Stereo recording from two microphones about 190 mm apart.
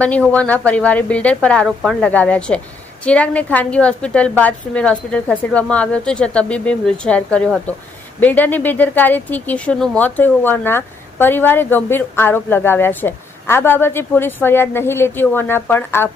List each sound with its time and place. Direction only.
0.0 s a woman's voice: 5° left (ahead or behind)